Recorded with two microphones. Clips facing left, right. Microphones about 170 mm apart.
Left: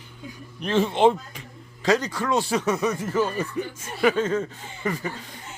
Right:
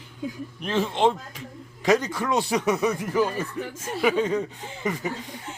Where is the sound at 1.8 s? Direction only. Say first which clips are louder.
Right 1 dB; 20° right (ahead or behind).